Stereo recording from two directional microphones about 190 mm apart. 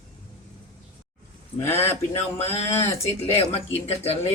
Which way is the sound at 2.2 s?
35° left (ahead or behind).